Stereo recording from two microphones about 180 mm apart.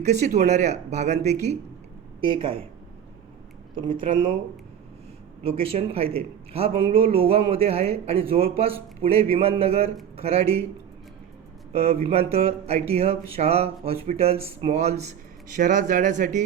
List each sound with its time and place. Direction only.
0.0 s a man's voice: 40° right (ahead or behind)
3.8 s speech: 25° right (ahead or behind)
5.4 s a man's voice: 30° right (ahead or behind)
11.7 s a man's voice: 35° right (ahead or behind)